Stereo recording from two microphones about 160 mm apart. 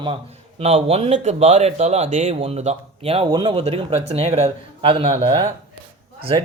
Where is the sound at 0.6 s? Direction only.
40° right (ahead or behind).